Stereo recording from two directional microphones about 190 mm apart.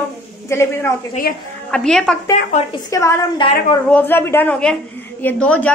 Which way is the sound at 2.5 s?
40° left (ahead or behind).